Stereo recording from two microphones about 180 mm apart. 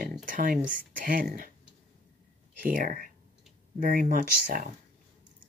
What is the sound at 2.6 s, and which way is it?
Speech, 50° right (ahead or behind).